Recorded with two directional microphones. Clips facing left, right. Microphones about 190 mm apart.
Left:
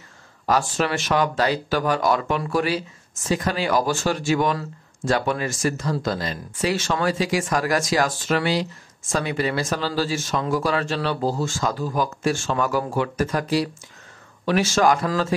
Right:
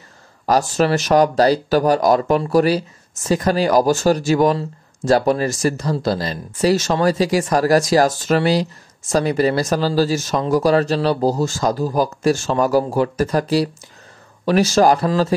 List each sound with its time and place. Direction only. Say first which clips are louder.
0.5 s speech: right 5 dB; 40° right (ahead or behind)